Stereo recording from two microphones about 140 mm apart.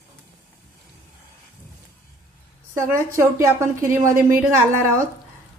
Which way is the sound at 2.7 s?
20° right (ahead or behind).